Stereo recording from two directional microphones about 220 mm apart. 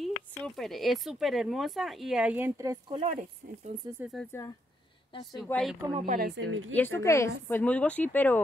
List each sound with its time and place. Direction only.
0.0 s speech: centre (ahead or behind); by 3.0 s 15° right (ahead or behind)
3.0 s speech: 30° right (ahead or behind)
4.0 s speech: centre (ahead or behind)
5.4 s speech: centre (ahead or behind)
6.0 s speech: 45° right (ahead or behind)
6.7 s speech: 10° left (ahead or behind)